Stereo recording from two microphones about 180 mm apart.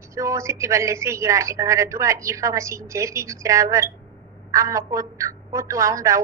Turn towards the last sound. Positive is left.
turn(degrees=-15)  # may be behind; listen again after turning